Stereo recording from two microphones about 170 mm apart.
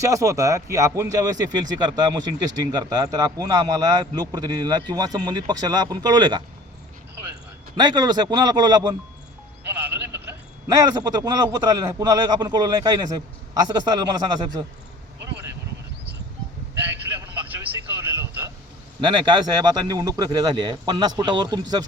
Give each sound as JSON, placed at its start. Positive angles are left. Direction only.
{"t": 0.0, "sound": "a man's voice", "side_deg": -20}
{"t": 7.8, "sound": "a man's voice", "side_deg": -25}
{"t": 10.7, "sound": "a man's voice", "side_deg": -20}
{"t": 17.5, "sound": "vehicle", "side_deg": -10}
{"t": 19.0, "sound": "a man's voice", "side_deg": -25}